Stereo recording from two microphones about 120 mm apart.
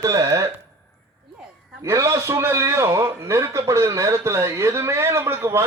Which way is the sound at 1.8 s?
25° right (ahead or behind).